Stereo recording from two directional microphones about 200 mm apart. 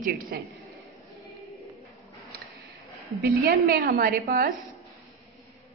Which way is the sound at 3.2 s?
50° right (ahead or behind).